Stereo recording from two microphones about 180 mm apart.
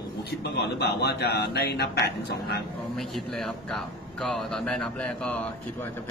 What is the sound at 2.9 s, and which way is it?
Speech, centre (ahead or behind).